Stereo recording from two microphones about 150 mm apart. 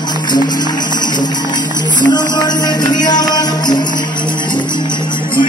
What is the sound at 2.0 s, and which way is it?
Music, 30° left (ahead or behind).